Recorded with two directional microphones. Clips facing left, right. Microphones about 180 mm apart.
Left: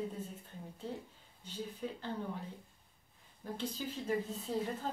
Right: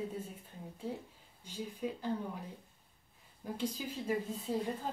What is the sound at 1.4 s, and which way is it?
Speech, 10° right (ahead or behind).